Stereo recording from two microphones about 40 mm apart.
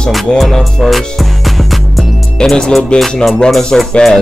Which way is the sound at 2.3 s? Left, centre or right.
Centre.